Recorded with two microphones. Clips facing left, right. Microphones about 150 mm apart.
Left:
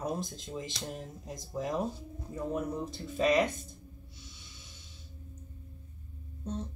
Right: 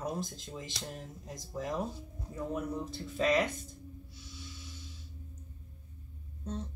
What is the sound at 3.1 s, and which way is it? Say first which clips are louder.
Speech: left 2 dB; 15° left (ahead or behind).